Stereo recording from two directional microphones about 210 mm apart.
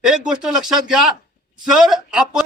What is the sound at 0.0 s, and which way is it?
Speech, 5° right (ahead or behind).